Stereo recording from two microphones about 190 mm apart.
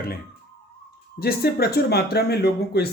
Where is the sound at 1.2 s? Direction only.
55° left (ahead or behind).